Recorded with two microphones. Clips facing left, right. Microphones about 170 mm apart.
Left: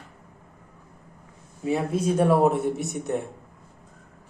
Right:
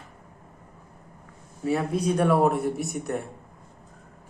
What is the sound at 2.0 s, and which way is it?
Speech, 25° left (ahead or behind).